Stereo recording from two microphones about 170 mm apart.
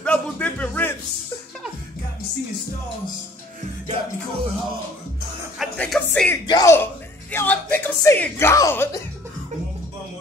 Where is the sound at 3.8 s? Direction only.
40° right (ahead or behind).